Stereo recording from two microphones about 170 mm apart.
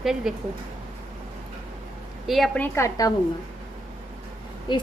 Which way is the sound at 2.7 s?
15° left (ahead or behind).